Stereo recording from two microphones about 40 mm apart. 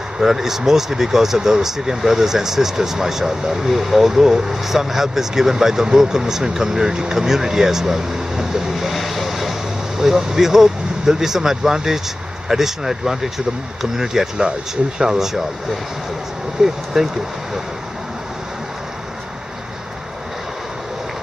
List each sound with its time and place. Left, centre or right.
0.2 s speech: centre